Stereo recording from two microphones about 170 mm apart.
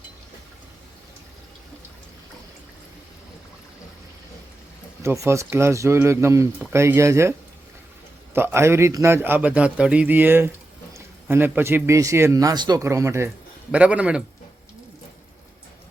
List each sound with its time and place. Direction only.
5.0 s a man's voice: 15° right (ahead or behind)